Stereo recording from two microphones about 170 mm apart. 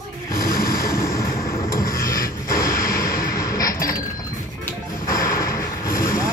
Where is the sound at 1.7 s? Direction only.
55° left (ahead or behind).